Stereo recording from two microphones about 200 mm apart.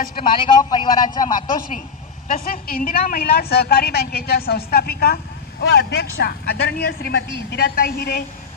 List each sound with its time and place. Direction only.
0.1 s a man's voice: 25° left (ahead or behind)
1.1 s a man's voice: 40° left (ahead or behind)